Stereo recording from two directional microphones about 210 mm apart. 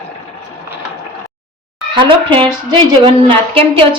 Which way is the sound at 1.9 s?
25° right (ahead or behind).